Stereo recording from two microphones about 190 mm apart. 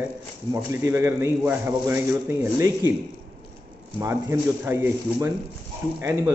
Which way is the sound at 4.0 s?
15° right (ahead or behind).